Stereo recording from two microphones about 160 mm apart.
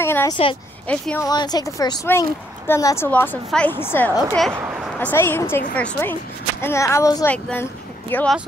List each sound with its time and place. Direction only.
0.0 s a sound: 15° left (ahead or behind)
0.3 s speech: 35° left (ahead or behind)
0.8 s a woman's voice: 10° left (ahead or behind)
1.2 s a woman's voice: 25° left (ahead or behind)
7.2 s a woman's voice: 10° left (ahead or behind)